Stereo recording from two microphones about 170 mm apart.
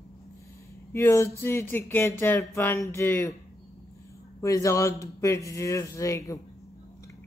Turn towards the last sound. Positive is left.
turn(degrees=20)  # may be behind; listen again after turning